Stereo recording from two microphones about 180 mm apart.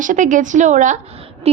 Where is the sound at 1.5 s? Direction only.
35° right (ahead or behind).